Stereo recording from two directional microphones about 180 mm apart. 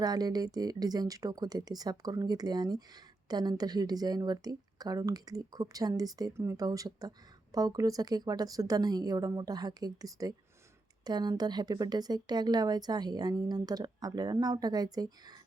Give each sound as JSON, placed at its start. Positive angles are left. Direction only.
{"t": 0.0, "sound": "speech", "side_deg": -20}